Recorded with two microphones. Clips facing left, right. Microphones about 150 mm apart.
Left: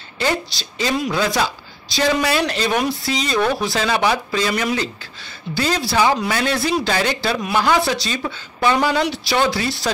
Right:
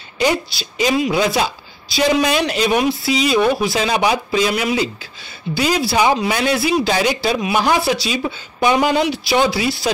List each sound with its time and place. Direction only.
0.2 s speech: 15° right (ahead or behind)